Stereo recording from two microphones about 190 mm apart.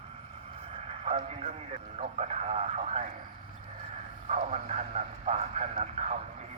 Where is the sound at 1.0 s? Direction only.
35° right (ahead or behind).